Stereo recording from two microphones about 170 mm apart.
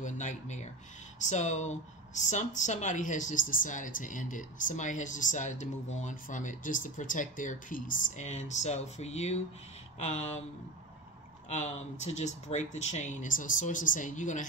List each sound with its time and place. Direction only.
0.0 s a sound: 45° left (ahead or behind)
1.2 s speech: 45° left (ahead or behind)
11.4 s speech: 45° left (ahead or behind)